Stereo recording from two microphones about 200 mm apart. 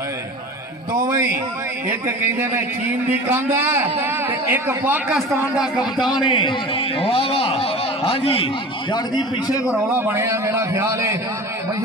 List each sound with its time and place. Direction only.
1.9 s a man's voice: 10° right (ahead or behind)
6.3 s a man's voice: 25° left (ahead or behind)
9.7 s a man's voice: 15° right (ahead or behind)